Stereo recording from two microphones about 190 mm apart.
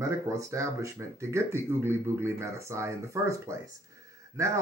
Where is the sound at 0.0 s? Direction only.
15° right (ahead or behind).